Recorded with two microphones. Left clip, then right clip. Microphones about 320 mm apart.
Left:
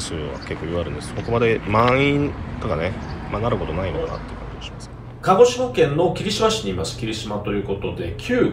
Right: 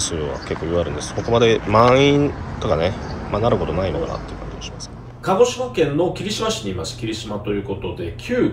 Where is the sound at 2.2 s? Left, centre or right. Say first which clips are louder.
Right 4 dB; centre.